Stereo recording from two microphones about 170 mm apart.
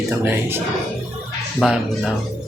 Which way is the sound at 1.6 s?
Centre (ahead or behind).